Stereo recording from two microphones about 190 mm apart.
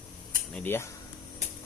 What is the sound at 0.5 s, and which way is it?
Speech, 10° left (ahead or behind).